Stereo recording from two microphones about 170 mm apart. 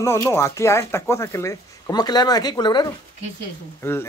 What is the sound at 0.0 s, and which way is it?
Speech, 15° left (ahead or behind).